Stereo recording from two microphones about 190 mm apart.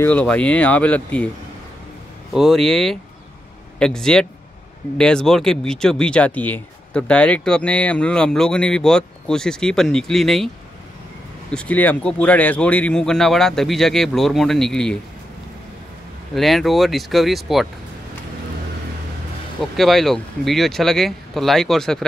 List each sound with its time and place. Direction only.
0.0 s speech: 10° left (ahead or behind)
2.3 s speech: centre (ahead or behind)
11.5 s speech: 5° left (ahead or behind)
16.3 s speech: centre (ahead or behind)
19.6 s speech: centre (ahead or behind)